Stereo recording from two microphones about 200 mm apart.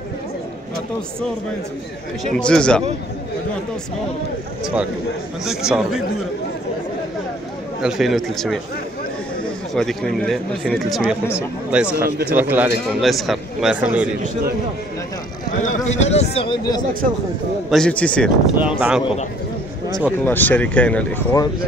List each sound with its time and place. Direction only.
2.3 s speech: 5° left (ahead or behind)
5.4 s speech: 5° right (ahead or behind)
7.8 s speech: centre (ahead or behind)
9.8 s speech: 5° left (ahead or behind)
15.6 s speech: 35° left (ahead or behind)
17.6 s speech: 5° left (ahead or behind)
18.6 s speech: 5° right (ahead or behind)
20.1 s speech: 10° left (ahead or behind)